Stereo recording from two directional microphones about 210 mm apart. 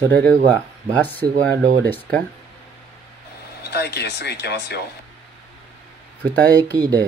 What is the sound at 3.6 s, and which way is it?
Speech, 50° left (ahead or behind).